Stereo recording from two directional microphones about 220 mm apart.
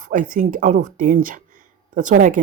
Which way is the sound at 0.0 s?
35° right (ahead or behind).